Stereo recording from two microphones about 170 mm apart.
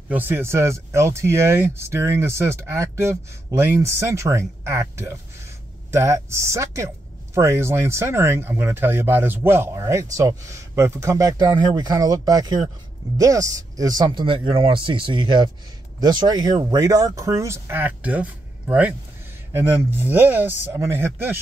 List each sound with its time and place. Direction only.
0.1 s speech: 10° right (ahead or behind)